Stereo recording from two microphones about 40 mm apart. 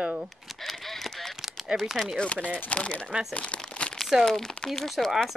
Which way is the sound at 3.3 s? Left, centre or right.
Left.